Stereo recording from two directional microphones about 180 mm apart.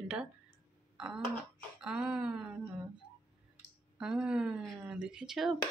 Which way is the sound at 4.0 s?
5° right (ahead or behind).